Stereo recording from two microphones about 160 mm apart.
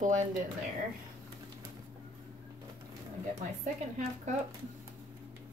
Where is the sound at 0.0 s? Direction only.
50° right (ahead or behind).